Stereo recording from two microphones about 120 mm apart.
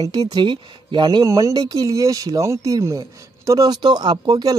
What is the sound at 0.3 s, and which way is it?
Speech, 40° right (ahead or behind).